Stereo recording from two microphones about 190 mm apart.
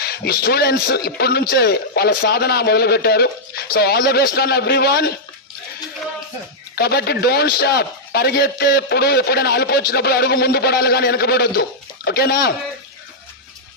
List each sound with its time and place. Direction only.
0.0 s a man's voice: 55° left (ahead or behind)
6.7 s a man's voice: 55° left (ahead or behind)